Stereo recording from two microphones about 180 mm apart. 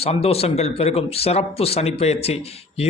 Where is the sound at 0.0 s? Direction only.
35° left (ahead or behind).